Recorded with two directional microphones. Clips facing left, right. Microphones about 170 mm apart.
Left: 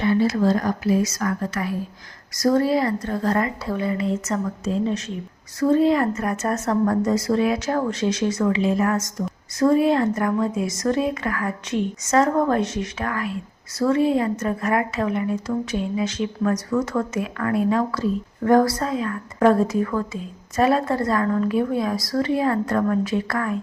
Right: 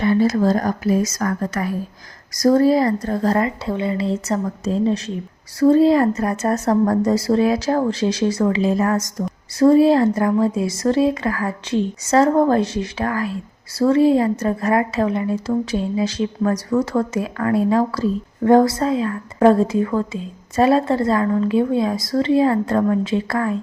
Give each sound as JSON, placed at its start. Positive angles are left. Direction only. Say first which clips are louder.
{"t": 0.0, "sound": "a woman's voice", "louder": "right 3 dB", "side_deg": -45}